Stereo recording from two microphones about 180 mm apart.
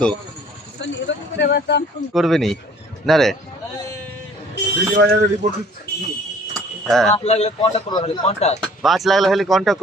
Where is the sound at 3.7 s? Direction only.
15° left (ahead or behind).